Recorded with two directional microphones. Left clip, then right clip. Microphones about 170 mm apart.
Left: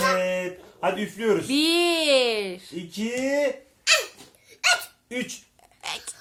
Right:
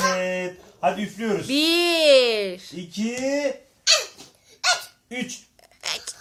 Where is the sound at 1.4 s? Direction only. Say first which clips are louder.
Right 1 dB; 5° left (ahead or behind).